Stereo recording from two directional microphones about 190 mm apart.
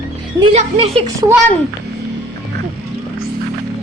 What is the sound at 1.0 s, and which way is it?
Speech, 20° right (ahead or behind).